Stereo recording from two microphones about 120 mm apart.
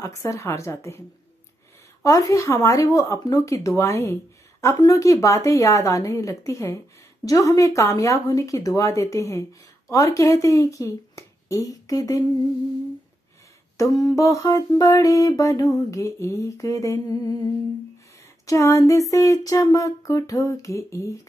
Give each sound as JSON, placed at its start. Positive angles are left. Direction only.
{"t": 0.0, "sound": "speech", "side_deg": 25}
{"t": 2.0, "sound": "speech", "side_deg": 30}
{"t": 13.7, "sound": "speech", "side_deg": 25}
{"t": 18.5, "sound": "speech", "side_deg": 25}